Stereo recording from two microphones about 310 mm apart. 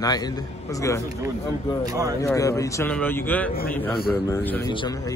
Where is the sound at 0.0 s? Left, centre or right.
Centre.